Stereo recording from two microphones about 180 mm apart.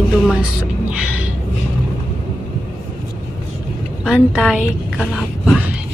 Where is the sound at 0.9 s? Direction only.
5° right (ahead or behind).